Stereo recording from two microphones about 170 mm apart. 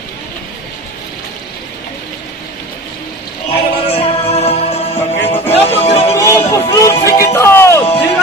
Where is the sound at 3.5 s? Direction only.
35° left (ahead or behind).